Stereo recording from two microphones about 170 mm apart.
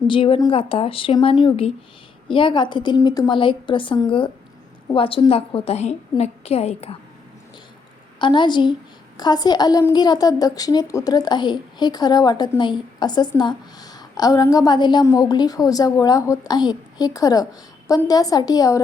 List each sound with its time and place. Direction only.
0.1 s a woman's voice: 30° left (ahead or behind)
8.2 s a woman's voice: 30° left (ahead or behind)